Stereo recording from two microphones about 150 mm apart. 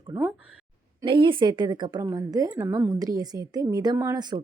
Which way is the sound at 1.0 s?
35° right (ahead or behind).